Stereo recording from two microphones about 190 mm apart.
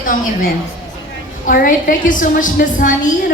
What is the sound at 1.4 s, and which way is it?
A man's voice, 45° left (ahead or behind).